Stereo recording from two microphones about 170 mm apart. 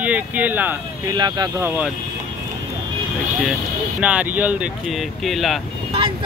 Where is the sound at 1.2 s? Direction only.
25° right (ahead or behind).